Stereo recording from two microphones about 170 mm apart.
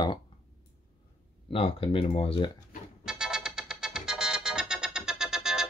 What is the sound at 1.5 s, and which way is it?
Speech, 35° left (ahead or behind).